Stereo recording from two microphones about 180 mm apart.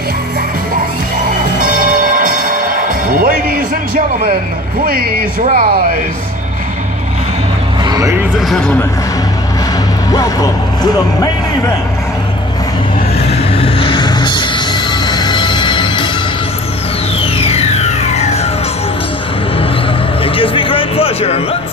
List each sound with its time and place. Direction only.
3.1 s music: 50° right (ahead or behind)
4.8 s speech: 55° right (ahead or behind)
7.8 s a sound: 20° right (ahead or behind)
8.4 s a man's voice: centre (ahead or behind)
10.1 s speech: 20° left (ahead or behind)
13.6 s music: 30° left (ahead or behind)
17.2 s music: 35° left (ahead or behind)
20.3 s a sound: 30° left (ahead or behind)